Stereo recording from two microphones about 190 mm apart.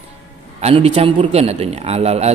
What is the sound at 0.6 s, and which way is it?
A man's voice, 30° right (ahead or behind).